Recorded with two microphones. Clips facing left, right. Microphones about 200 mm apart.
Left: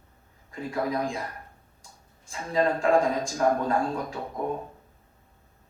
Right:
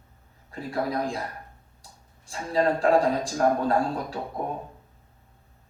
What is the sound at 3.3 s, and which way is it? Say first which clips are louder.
Speech: right 1 dB; 35° right (ahead or behind).